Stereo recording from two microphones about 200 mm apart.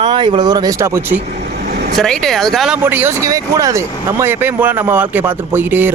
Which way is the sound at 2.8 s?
10° right (ahead or behind).